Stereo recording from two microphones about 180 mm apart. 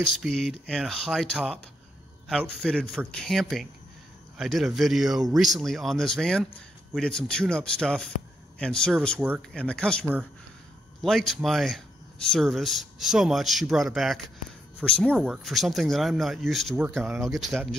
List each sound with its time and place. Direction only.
0.2 s speech: centre (ahead or behind)
2.6 s speech: centre (ahead or behind)